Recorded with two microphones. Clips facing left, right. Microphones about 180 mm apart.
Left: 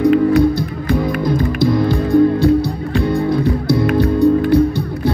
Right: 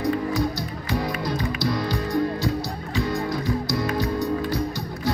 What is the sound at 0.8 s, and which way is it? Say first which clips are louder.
Music: left 9 dB; 50° left (ahead or behind).